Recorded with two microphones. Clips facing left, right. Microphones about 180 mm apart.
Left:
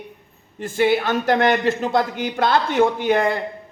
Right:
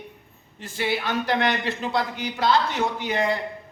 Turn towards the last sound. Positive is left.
turn(degrees=55)  # may be behind; listen again after turning